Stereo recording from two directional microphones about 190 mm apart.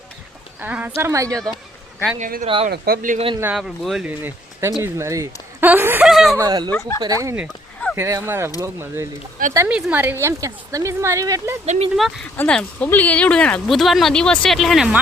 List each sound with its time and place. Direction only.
0.6 s a woman's voice: 10° right (ahead or behind)
2.1 s speech: 40° right (ahead or behind)
2.6 s speech: 50° right (ahead or behind)
3.4 s a woman's voice: centre (ahead or behind)
6.3 s speech: 20° right (ahead or behind)
6.7 s speech: 15° left (ahead or behind)
7.0 s a woman's voice: 15° right (ahead or behind)
11.6 s speech: 35° right (ahead or behind)
11.9 s speech: centre (ahead or behind)